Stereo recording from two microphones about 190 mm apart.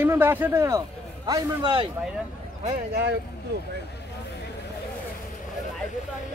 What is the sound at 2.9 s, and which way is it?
Speech, 65° right (ahead or behind).